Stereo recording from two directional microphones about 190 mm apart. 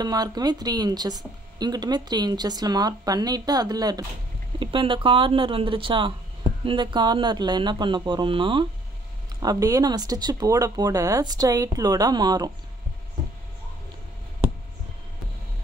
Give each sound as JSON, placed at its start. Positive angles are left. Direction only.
{"t": 0.0, "sound": "speech", "side_deg": -20}